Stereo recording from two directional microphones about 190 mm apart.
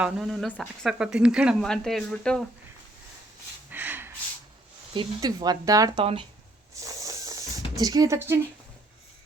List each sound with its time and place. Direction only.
0.0 s speech: centre (ahead or behind)
3.7 s gasp: 10° right (ahead or behind)
4.9 s speech: 20° right (ahead or behind)
6.0 s speech: 30° right (ahead or behind)
6.7 s a sound: 15° right (ahead or behind)